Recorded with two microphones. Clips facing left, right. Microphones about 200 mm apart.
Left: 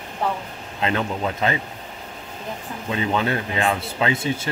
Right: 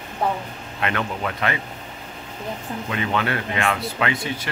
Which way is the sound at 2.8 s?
25° left (ahead or behind).